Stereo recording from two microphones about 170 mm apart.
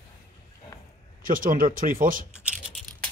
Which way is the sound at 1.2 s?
55° right (ahead or behind).